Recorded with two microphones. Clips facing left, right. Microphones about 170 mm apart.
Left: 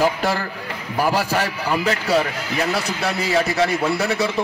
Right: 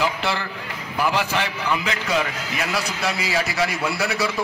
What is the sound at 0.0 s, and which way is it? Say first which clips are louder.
A man's voice: left 4 dB; 45° left (ahead or behind).